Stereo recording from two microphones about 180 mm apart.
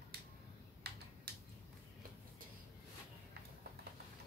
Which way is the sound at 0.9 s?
65° right (ahead or behind).